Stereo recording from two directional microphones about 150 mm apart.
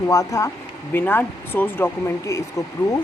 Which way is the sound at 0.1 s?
20° left (ahead or behind).